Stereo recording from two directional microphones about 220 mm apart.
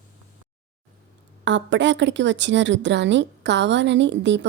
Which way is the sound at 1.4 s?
55° right (ahead or behind).